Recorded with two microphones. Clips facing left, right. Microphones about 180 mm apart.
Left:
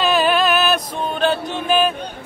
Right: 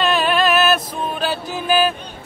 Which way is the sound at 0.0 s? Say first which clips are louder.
Left 1 dB; centre (ahead or behind).